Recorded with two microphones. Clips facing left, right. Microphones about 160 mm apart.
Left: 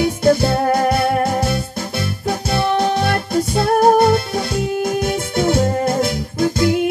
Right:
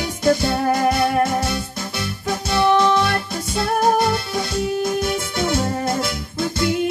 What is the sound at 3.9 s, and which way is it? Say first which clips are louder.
Music: left 6 dB; 50° left (ahead or behind).